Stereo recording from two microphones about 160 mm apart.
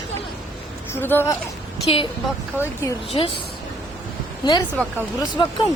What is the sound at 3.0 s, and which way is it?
A woman's voice, 35° left (ahead or behind).